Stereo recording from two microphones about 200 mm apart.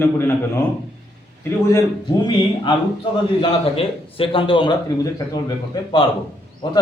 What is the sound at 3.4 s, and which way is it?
A man's voice, 25° left (ahead or behind).